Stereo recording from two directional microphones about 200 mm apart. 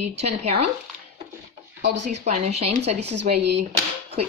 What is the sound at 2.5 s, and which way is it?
Speech, 30° right (ahead or behind).